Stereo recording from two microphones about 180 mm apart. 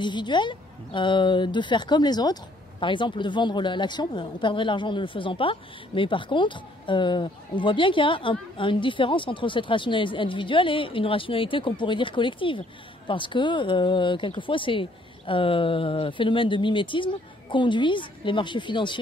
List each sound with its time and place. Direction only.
0.0 s a woman's voice: 25° left (ahead or behind)